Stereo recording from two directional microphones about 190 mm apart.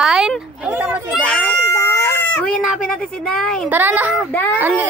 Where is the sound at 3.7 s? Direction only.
10° right (ahead or behind).